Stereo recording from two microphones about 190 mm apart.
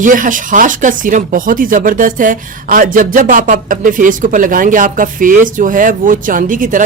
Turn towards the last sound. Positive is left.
turn(degrees=-45)  # may be behind; listen again after turning